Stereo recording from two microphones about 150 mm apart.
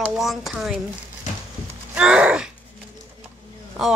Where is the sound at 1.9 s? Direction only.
5° right (ahead or behind).